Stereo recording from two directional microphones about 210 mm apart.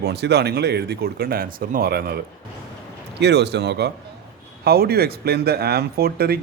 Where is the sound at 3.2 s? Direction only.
55° right (ahead or behind).